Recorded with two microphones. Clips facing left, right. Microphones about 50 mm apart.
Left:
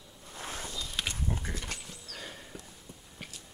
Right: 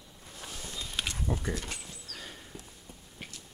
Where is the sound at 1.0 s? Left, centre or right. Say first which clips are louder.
Even; centre.